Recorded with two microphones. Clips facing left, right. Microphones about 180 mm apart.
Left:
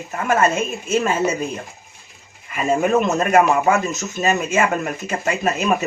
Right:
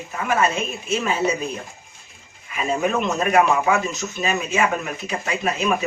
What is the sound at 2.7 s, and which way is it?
Speech, 45° left (ahead or behind).